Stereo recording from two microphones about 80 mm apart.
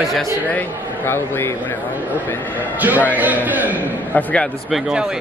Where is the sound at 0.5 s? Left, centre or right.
Left.